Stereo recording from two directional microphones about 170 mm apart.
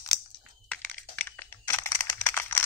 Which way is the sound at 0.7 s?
10° left (ahead or behind).